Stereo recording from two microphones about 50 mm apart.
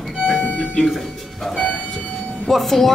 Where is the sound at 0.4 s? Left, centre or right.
Left.